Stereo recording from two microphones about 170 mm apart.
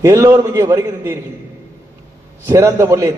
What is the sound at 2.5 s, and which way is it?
Speech, 15° right (ahead or behind).